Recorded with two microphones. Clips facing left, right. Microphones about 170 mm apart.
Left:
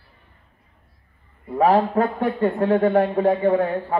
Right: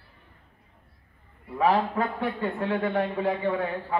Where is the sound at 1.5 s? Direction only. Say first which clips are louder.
Left 6 dB; 45° left (ahead or behind).